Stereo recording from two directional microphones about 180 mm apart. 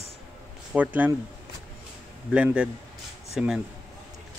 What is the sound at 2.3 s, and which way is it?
A man's voice, 5° right (ahead or behind).